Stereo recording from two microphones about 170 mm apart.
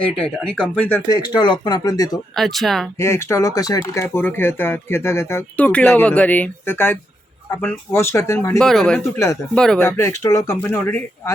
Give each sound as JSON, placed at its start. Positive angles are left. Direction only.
{"t": 0.2, "sound": "speech", "side_deg": 5}
{"t": 1.0, "sound": "speech", "side_deg": 25}
{"t": 2.3, "sound": "speech", "side_deg": 0}
{"t": 3.0, "sound": "speech", "side_deg": 15}
{"t": 8.5, "sound": "speech", "side_deg": 0}
{"t": 9.0, "sound": "speech", "side_deg": 15}
{"t": 9.6, "sound": "speech", "side_deg": 5}
{"t": 10.0, "sound": "speech", "side_deg": 15}